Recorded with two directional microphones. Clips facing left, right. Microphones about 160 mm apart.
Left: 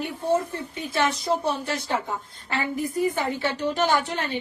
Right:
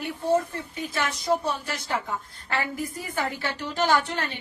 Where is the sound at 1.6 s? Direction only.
25° left (ahead or behind).